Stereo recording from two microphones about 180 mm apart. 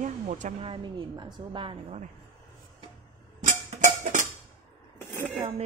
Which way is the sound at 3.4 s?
45° right (ahead or behind).